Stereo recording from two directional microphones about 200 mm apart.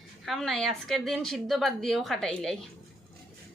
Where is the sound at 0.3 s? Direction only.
Centre (ahead or behind).